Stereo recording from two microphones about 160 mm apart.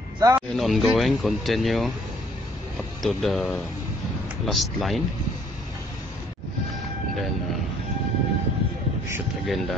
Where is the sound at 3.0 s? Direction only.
Centre (ahead or behind).